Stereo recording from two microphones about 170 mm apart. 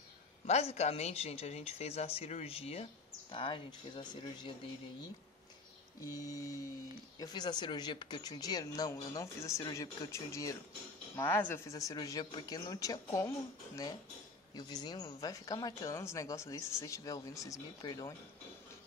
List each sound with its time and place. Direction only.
0.5 s speech: 40° left (ahead or behind)
6.1 s speech: 20° left (ahead or behind)
14.5 s speech: 25° left (ahead or behind)